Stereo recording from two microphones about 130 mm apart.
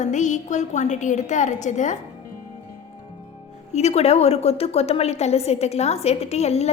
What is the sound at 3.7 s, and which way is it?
A woman's voice, 55° left (ahead or behind).